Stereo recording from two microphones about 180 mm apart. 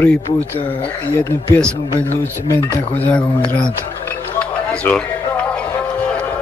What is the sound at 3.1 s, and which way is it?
Speech, 5° left (ahead or behind).